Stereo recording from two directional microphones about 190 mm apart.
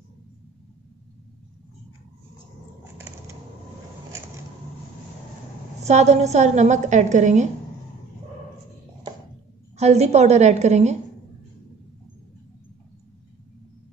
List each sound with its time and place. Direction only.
5.8 s a woman's voice: 35° right (ahead or behind)
9.8 s a woman's voice: 35° right (ahead or behind)